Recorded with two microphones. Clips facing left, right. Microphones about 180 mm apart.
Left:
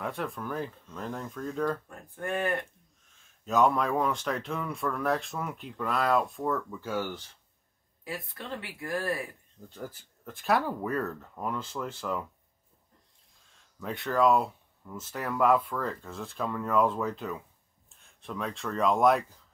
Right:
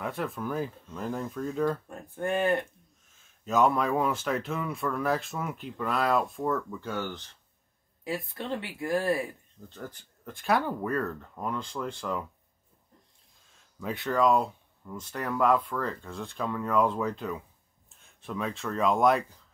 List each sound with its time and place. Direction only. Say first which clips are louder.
0.0 s speech: right 2 dB; centre (ahead or behind)
1.9 s speech: right 4 dB; 25° right (ahead or behind)
3.2 s speech: even; centre (ahead or behind)
8.0 s speech: right 5 dB; 25° right (ahead or behind)
9.7 s speech: left 1 dB; 5° left (ahead or behind)
13.7 s speech: even; centre (ahead or behind)